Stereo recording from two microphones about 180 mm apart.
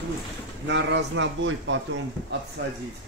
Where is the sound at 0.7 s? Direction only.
90° right.